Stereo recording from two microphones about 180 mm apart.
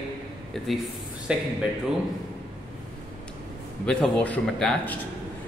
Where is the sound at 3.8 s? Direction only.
5° left (ahead or behind).